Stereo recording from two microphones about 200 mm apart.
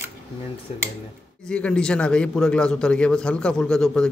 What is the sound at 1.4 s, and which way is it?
A man's voice, 5° left (ahead or behind).